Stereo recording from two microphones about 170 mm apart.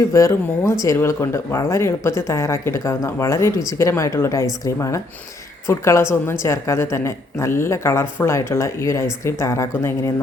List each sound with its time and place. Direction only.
0.1 s speech: 20° left (ahead or behind)